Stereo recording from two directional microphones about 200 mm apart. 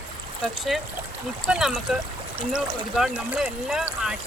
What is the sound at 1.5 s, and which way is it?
Speech, 5° right (ahead or behind).